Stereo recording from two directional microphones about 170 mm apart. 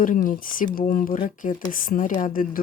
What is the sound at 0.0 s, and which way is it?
Speech, 50° left (ahead or behind).